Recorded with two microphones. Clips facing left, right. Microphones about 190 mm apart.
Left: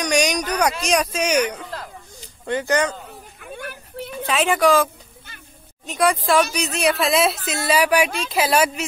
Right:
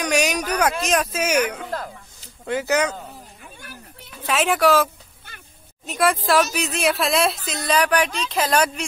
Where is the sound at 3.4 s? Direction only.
60° left (ahead or behind).